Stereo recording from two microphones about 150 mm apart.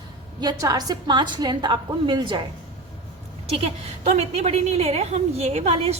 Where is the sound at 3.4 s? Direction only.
40° right (ahead or behind).